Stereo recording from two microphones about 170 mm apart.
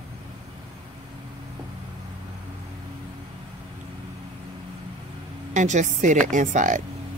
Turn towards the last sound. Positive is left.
turn(degrees=-50)  # may be behind; listen again after turning